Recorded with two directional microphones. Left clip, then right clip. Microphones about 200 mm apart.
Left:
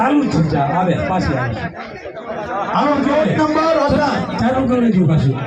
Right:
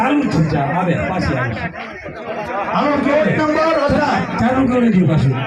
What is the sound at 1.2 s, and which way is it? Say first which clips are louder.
Speech: even; 30° right (ahead or behind).